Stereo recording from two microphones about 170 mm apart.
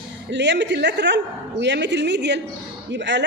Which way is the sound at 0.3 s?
90° right.